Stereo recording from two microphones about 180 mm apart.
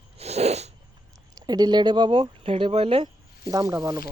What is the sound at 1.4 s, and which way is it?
Speech, 20° right (ahead or behind).